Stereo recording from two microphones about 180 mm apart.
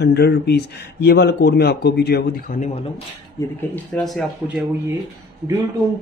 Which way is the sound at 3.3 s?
5° left (ahead or behind).